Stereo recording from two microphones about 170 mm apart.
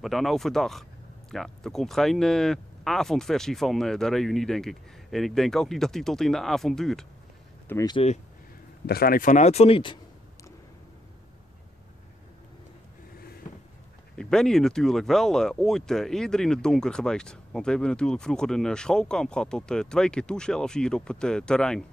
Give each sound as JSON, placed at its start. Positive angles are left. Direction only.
{"t": 0.0, "sound": "speech", "side_deg": 0}
{"t": 7.6, "sound": "speech", "side_deg": 15}
{"t": 7.9, "sound": "speech", "side_deg": 35}
{"t": 8.8, "sound": "speech", "side_deg": 65}
{"t": 14.1, "sound": "speech", "side_deg": 5}